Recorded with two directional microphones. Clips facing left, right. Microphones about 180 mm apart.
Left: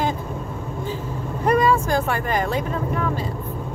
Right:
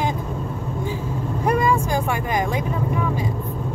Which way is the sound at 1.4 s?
10° right (ahead or behind).